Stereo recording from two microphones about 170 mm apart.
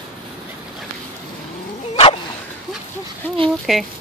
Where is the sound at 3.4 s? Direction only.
Centre (ahead or behind).